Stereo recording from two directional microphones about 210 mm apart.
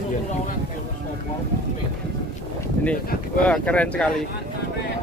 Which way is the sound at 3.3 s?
5° left (ahead or behind).